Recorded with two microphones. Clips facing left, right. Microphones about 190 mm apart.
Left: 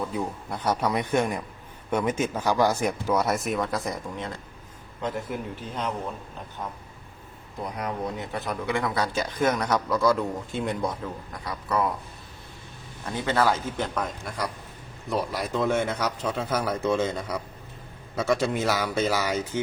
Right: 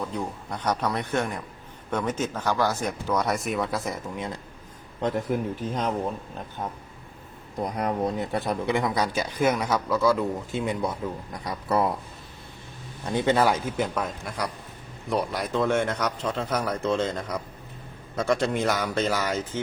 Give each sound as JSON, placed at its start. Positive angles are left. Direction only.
{"t": 0.1, "sound": "speech", "side_deg": 5}
{"t": 5.1, "sound": "a man's voice", "side_deg": -45}
{"t": 7.6, "sound": "speech", "side_deg": -40}
{"t": 8.7, "sound": "speech", "side_deg": -15}
{"t": 11.4, "sound": "speech", "side_deg": -30}
{"t": 13.1, "sound": "a man's voice", "side_deg": -20}